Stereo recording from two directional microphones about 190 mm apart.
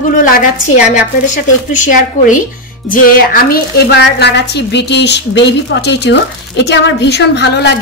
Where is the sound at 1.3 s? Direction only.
40° left (ahead or behind).